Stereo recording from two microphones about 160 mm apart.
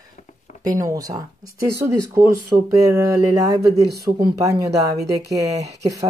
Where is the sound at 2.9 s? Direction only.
15° right (ahead or behind).